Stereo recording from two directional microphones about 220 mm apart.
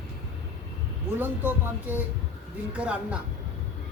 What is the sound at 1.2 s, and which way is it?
A woman's voice, 10° right (ahead or behind).